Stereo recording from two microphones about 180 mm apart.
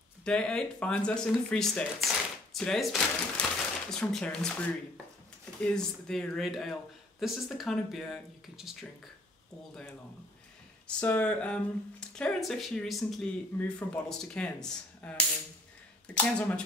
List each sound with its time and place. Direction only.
0.2 s speech: 5° left (ahead or behind)
11.0 s speech: 10° left (ahead or behind)